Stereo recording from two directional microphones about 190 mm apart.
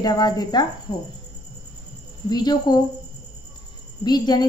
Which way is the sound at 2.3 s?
20° left (ahead or behind).